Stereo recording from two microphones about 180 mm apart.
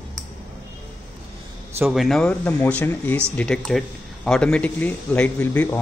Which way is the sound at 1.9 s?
Centre (ahead or behind).